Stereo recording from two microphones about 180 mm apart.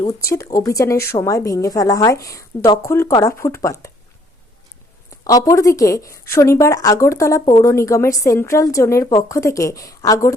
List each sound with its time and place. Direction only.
0.0 s a woman's voice: 20° left (ahead or behind)
5.2 s a woman's voice: 20° left (ahead or behind)